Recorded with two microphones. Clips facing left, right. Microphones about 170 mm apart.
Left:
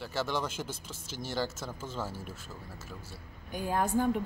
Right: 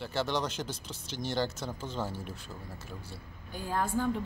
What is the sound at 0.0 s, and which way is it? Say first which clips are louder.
Speech: right 1 dB; 5° left (ahead or behind).